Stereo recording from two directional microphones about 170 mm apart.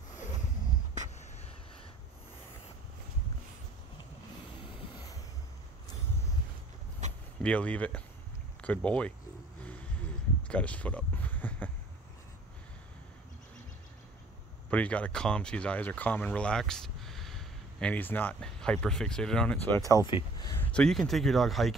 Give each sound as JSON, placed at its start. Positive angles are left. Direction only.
{"t": 4.6, "sound": "vehicle", "side_deg": 25}
{"t": 7.4, "sound": "speech", "side_deg": 5}
{"t": 9.6, "sound": "a sound", "side_deg": 10}
{"t": 14.7, "sound": "speech", "side_deg": 10}
{"t": 20.1, "sound": "speech", "side_deg": 25}
{"t": 20.5, "sound": "speech", "side_deg": 10}